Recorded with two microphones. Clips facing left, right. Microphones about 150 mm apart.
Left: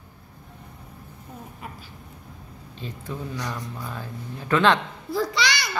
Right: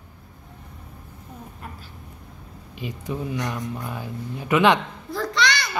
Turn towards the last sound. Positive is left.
turn(degrees=5)  # may be behind; listen again after turning